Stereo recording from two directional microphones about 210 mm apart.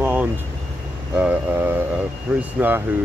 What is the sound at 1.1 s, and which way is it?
Speech, 10° right (ahead or behind).